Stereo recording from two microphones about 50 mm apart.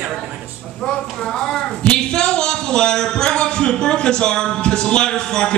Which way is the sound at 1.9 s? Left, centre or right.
Centre.